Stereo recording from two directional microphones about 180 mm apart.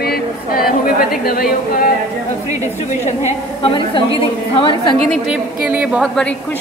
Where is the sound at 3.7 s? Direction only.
30° left (ahead or behind).